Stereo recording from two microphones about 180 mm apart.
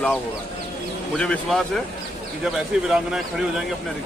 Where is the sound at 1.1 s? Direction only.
5° left (ahead or behind).